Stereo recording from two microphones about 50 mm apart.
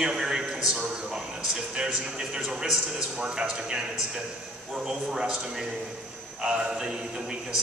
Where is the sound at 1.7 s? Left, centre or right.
Centre.